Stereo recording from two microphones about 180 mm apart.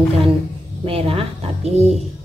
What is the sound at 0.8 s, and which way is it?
Speech, 30° right (ahead or behind).